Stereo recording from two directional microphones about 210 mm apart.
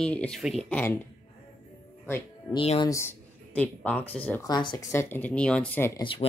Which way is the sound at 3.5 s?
5° left (ahead or behind).